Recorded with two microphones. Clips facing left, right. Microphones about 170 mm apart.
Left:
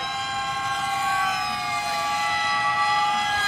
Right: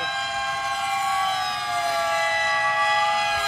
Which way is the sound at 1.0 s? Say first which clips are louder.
Right 2 dB; 30° right (ahead or behind).